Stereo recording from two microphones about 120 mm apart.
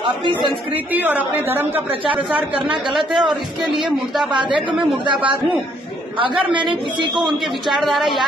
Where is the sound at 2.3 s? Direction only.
45° right (ahead or behind).